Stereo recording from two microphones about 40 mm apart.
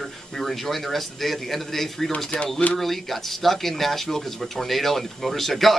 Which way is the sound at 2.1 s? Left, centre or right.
Left.